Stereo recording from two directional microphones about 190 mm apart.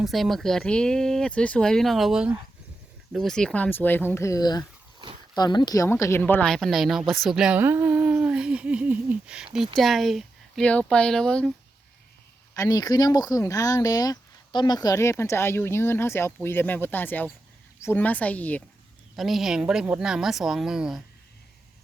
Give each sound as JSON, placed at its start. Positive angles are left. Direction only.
{"t": 0.0, "sound": "speech", "side_deg": 0}
{"t": 12.5, "sound": "speech", "side_deg": 20}